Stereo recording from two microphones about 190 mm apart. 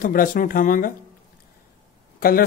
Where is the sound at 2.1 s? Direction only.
50° left (ahead or behind).